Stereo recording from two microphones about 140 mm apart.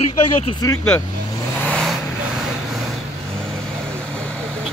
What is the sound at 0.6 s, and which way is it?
Speech, 25° left (ahead or behind).